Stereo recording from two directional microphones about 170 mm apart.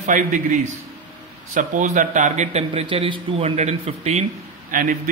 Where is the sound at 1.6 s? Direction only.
50° right (ahead or behind).